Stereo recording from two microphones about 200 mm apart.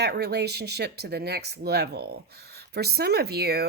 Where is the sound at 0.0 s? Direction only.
55° right (ahead or behind).